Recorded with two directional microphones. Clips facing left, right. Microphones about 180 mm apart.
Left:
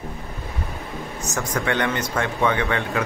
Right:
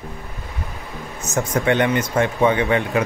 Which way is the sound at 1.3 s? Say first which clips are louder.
Right 6 dB; 20° right (ahead or behind).